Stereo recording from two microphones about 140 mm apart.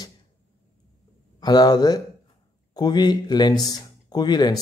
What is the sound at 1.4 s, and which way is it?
Speech, 30° left (ahead or behind).